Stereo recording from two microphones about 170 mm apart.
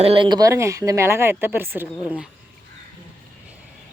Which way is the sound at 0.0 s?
30° right (ahead or behind).